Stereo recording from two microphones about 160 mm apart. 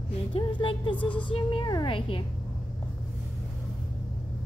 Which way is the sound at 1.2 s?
35° left (ahead or behind).